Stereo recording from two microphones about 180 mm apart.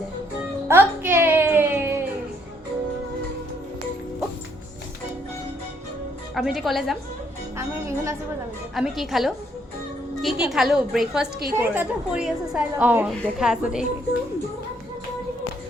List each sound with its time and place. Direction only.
0.7 s a sound: 10° right (ahead or behind)
6.3 s a woman's voice: centre (ahead or behind)
7.5 s music: 15° right (ahead or behind)
8.7 s a woman's voice: centre (ahead or behind)